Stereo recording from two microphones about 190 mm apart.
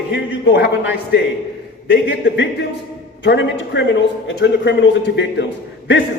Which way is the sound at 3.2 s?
65° left (ahead or behind).